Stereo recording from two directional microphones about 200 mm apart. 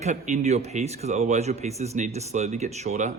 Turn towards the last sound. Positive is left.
turn(degrees=-35)  # may be behind; listen again after turning